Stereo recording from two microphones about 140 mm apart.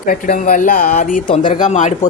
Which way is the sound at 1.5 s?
60° left (ahead or behind).